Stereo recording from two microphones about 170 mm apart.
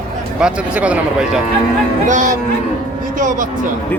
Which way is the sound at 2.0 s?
45° right (ahead or behind).